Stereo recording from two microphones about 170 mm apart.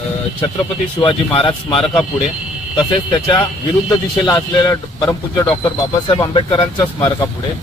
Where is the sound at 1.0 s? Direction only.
30° left (ahead or behind).